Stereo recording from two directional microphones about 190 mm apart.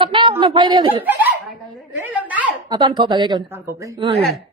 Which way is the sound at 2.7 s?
25° right (ahead or behind).